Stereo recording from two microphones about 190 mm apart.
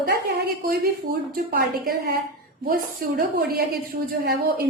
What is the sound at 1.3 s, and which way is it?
Speech, 50° right (ahead or behind).